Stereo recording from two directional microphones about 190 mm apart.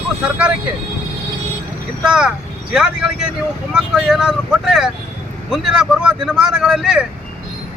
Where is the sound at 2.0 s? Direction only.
5° right (ahead or behind).